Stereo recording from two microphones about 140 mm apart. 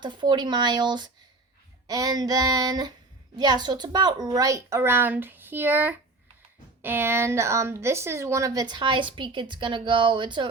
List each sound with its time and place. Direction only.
0.0 s a woman's voice: 30° right (ahead or behind)